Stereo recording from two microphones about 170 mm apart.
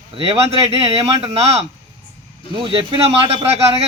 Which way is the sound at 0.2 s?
35° right (ahead or behind).